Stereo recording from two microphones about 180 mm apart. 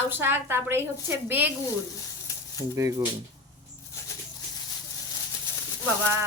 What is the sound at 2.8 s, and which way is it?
Speech, 15° right (ahead or behind).